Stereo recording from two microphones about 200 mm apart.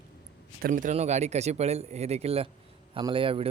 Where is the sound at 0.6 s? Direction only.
40° right (ahead or behind).